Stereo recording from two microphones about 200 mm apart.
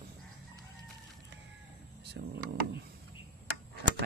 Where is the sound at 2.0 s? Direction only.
55° right (ahead or behind).